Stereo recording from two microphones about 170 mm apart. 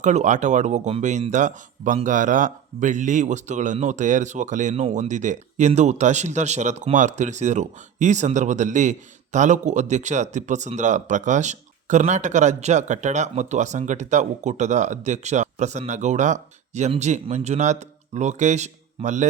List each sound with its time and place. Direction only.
0.0 s speech: 45° right (ahead or behind)